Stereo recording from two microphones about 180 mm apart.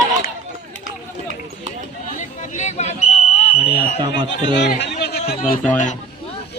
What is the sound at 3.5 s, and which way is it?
Fire alarm, 5° right (ahead or behind).